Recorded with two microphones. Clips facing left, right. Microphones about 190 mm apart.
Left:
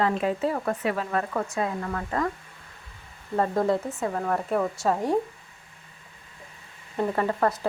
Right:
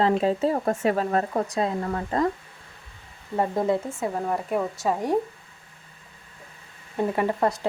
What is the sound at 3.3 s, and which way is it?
Speech, 15° right (ahead or behind).